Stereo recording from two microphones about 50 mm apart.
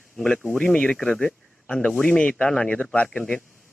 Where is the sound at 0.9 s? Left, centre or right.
Centre.